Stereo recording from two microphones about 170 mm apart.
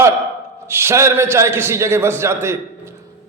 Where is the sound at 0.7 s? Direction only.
15° right (ahead or behind).